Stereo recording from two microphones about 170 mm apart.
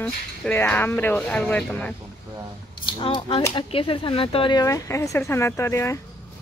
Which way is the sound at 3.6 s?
30° left (ahead or behind).